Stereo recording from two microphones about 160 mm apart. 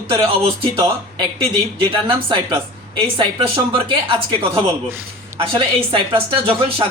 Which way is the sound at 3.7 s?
30° right (ahead or behind).